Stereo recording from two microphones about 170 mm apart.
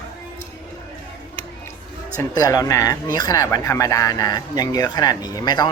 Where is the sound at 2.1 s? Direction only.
20° left (ahead or behind).